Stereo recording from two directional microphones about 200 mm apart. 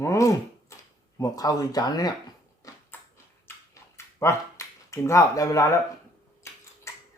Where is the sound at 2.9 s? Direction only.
10° left (ahead or behind).